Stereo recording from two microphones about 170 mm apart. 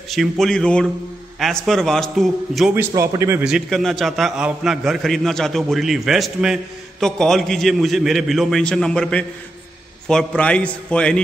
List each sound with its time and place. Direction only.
0.1 s a man's voice: centre (ahead or behind)
2.7 s speech: 15° right (ahead or behind)
3.4 s a man's voice: centre (ahead or behind)